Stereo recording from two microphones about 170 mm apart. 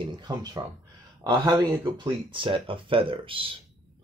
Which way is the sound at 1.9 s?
30° right (ahead or behind).